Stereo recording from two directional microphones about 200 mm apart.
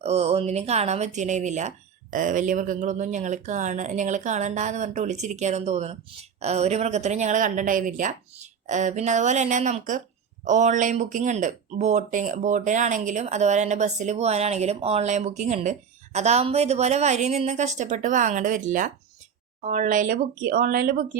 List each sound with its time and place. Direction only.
0.0 s speech: 30° right (ahead or behind)